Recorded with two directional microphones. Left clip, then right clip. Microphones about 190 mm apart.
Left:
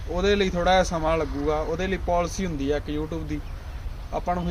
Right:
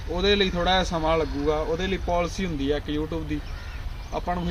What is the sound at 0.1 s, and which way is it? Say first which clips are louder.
Speech: even; 20° left (ahead or behind).